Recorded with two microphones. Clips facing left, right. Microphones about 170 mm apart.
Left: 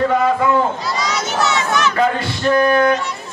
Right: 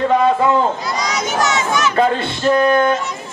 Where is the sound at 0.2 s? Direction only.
25° right (ahead or behind).